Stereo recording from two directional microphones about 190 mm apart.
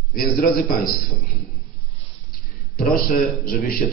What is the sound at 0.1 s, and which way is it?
Speech, 50° left (ahead or behind).